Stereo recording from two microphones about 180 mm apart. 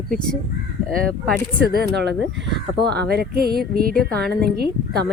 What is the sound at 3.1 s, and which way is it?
Speech, 60° right (ahead or behind).